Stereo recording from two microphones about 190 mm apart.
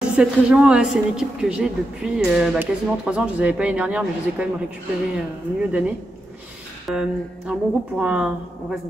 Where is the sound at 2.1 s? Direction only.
5° right (ahead or behind).